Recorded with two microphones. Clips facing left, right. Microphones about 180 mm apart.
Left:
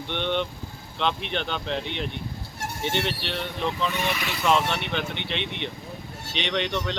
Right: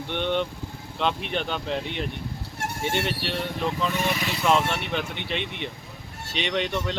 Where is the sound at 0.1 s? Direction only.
5° right (ahead or behind).